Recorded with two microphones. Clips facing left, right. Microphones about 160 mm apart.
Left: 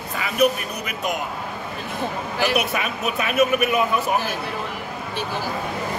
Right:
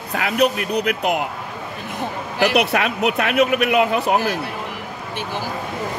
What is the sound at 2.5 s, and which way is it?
Speech, 70° right (ahead or behind).